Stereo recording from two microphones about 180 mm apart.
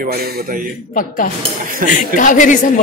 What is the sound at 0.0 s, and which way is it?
Speech, 55° right (ahead or behind).